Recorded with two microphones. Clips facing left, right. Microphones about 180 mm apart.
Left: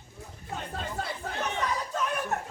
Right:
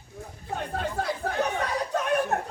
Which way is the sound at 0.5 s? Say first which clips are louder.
Right 5 dB; 60° right (ahead or behind).